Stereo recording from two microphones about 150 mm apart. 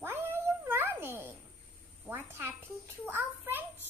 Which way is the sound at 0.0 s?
15° right (ahead or behind).